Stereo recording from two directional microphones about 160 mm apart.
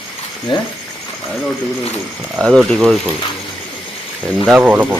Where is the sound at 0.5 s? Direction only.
30° left (ahead or behind).